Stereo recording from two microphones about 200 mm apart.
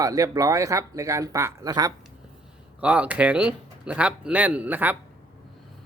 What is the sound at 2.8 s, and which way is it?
A man's voice, 5° right (ahead or behind).